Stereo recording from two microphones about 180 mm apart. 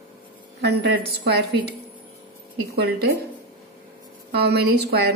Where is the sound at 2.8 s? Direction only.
65° right (ahead or behind).